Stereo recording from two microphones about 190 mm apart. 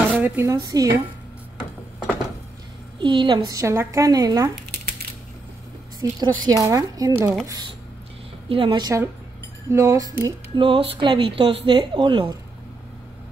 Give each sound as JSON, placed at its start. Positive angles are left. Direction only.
{"t": 0.2, "sound": "speech", "side_deg": -15}
{"t": 3.0, "sound": "speech", "side_deg": -25}
{"t": 5.9, "sound": "a woman's voice", "side_deg": -20}
{"t": 8.5, "sound": "speech", "side_deg": -25}